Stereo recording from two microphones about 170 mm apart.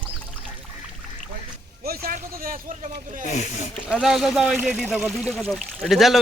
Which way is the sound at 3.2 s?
40° left (ahead or behind).